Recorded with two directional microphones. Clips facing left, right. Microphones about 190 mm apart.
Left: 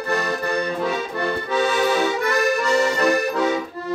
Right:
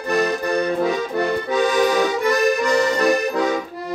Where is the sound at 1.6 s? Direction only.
15° right (ahead or behind).